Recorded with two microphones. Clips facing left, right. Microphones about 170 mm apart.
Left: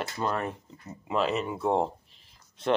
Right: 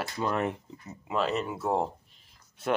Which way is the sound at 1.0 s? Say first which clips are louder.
Left 1 dB; centre (ahead or behind).